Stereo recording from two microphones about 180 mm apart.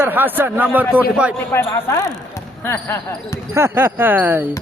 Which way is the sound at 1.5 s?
15° left (ahead or behind).